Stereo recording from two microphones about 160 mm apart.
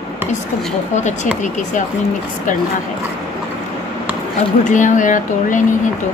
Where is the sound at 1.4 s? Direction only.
50° left (ahead or behind).